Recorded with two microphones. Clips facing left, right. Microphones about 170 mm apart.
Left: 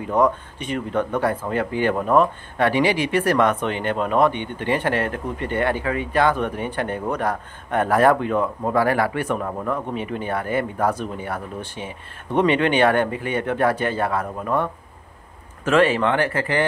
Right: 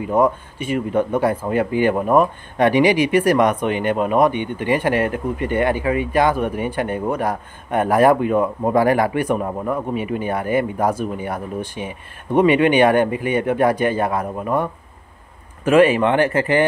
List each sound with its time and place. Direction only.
0.0 s speech: 10° right (ahead or behind)